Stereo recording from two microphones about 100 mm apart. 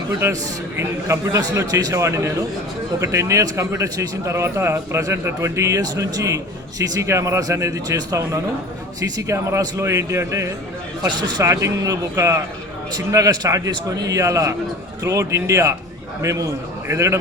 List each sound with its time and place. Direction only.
0.2 s a man's voice: 25° right (ahead or behind)
11.0 s a man's voice: 45° right (ahead or behind)